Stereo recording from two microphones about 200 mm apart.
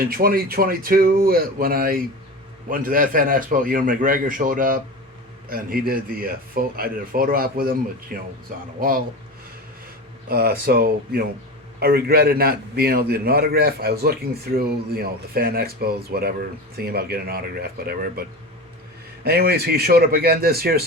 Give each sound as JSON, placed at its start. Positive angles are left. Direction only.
{"t": 0.0, "sound": "a man's voice", "side_deg": -45}
{"t": 10.2, "sound": "a man's voice", "side_deg": -50}
{"t": 19.2, "sound": "a man's voice", "side_deg": -50}